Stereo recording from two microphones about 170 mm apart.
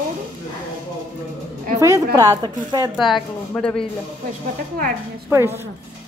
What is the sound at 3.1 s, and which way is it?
Speech, 5° left (ahead or behind).